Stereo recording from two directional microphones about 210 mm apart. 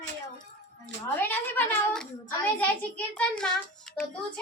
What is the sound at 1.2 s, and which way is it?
A child's voice, 10° left (ahead or behind).